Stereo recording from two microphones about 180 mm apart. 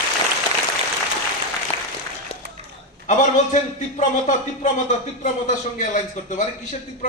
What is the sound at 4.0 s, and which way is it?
Speech, 45° left (ahead or behind).